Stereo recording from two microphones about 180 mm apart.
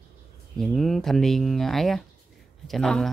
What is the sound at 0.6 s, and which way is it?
A woman's voice, centre (ahead or behind).